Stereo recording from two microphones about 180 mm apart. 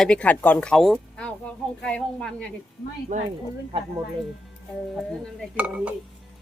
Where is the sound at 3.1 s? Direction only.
50° right (ahead or behind).